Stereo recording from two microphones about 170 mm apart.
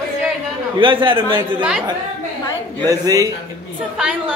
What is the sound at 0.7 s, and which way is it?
Speech, 30° right (ahead or behind).